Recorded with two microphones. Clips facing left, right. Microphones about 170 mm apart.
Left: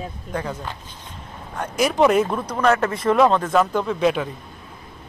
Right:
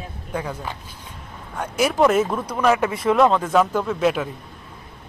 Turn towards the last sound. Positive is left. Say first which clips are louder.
# even
turn(degrees=-5)  # may be behind; listen again after turning